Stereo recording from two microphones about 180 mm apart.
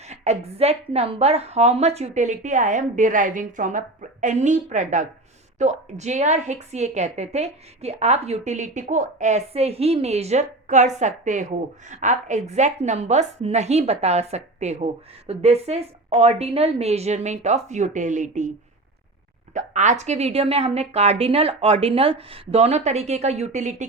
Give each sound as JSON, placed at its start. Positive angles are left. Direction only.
{"t": 0.0, "sound": "a woman's voice", "side_deg": -35}
{"t": 19.5, "sound": "a woman's voice", "side_deg": -40}